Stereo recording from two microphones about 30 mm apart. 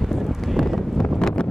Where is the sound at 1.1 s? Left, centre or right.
Left.